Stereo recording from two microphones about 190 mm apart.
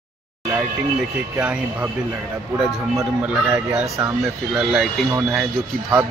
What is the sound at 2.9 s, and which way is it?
A man's voice, 10° right (ahead or behind).